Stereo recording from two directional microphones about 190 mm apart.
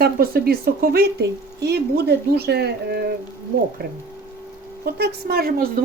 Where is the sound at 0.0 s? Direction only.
55° right (ahead or behind).